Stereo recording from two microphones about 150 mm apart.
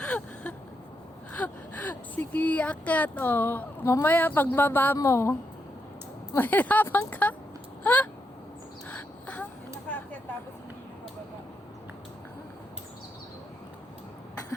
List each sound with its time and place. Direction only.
0.0 s whimper: 10° left (ahead or behind)
1.4 s speech: 10° left (ahead or behind)
8.9 s a sound: 10° left (ahead or behind)